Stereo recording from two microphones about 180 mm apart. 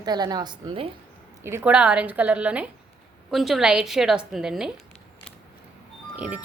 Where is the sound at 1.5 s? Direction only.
10° right (ahead or behind).